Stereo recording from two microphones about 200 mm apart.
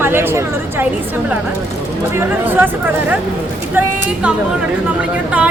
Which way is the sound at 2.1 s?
10° right (ahead or behind).